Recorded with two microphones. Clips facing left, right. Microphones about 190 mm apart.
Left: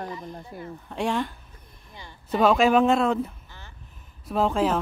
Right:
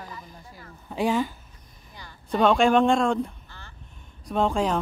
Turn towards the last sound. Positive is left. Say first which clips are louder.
# left 1 dB
turn(degrees=0)  # may be behind; listen again after turning